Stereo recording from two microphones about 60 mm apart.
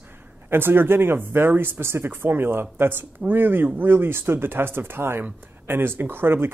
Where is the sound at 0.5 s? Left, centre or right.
Right.